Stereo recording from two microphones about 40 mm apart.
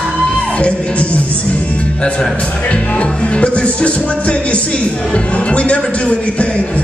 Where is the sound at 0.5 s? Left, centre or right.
Left.